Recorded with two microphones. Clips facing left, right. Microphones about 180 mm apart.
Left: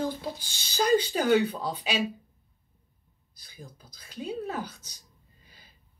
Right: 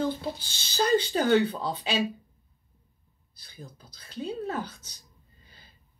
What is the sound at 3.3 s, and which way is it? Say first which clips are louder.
A woman's voice: right 1 dB; 10° left (ahead or behind).